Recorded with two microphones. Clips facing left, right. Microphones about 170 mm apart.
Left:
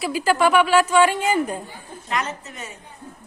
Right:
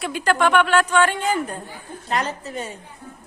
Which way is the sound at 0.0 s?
5° left (ahead or behind).